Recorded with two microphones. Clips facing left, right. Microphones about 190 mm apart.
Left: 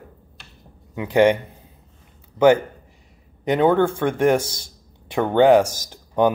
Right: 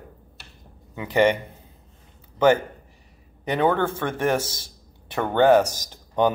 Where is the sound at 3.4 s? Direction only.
15° left (ahead or behind).